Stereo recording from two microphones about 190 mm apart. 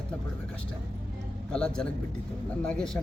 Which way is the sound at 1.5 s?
5° left (ahead or behind).